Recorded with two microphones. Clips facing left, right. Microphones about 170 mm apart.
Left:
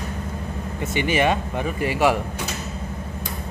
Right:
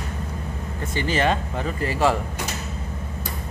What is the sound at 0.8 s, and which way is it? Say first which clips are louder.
Speech: left 2 dB; 15° left (ahead or behind).